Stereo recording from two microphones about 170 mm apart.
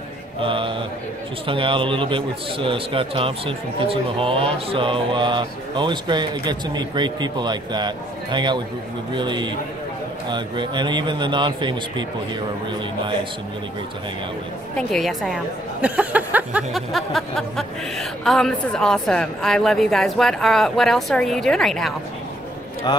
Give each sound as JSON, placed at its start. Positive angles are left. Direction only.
{"t": 0.4, "sound": "mantra", "side_deg": -30}
{"t": 1.5, "sound": "a man's voice", "side_deg": -30}
{"t": 14.8, "sound": "a woman's voice", "side_deg": 0}
{"t": 22.9, "sound": "speech", "side_deg": 25}